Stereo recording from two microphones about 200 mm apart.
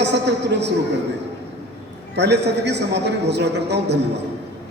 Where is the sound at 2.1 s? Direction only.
55° right (ahead or behind).